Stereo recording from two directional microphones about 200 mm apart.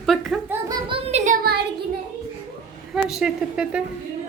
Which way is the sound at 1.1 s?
35° right (ahead or behind).